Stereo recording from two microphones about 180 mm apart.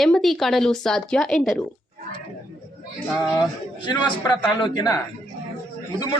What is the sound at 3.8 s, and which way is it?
A man's voice, 25° left (ahead or behind).